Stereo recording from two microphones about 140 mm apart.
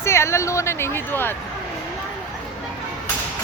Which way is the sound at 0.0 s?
20° left (ahead or behind).